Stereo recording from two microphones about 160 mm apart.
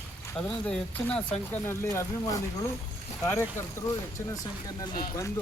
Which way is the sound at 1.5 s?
15° left (ahead or behind).